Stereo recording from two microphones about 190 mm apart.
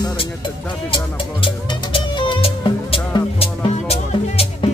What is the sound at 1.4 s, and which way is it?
Music, 25° left (ahead or behind).